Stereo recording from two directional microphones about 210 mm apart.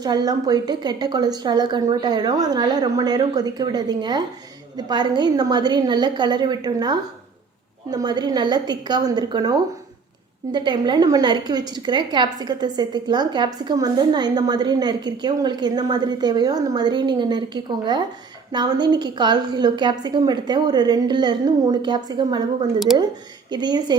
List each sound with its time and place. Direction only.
0.0 s a woman's voice: 20° right (ahead or behind)